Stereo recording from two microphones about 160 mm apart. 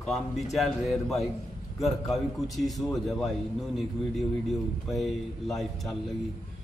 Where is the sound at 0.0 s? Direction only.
Centre (ahead or behind).